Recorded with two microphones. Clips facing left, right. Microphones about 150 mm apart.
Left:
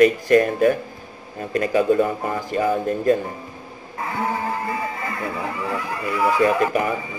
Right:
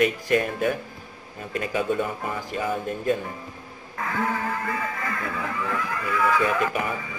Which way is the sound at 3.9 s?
30° left (ahead or behind).